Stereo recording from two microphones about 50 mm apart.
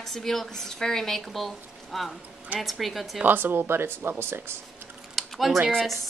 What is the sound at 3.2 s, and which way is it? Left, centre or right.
Speech, right.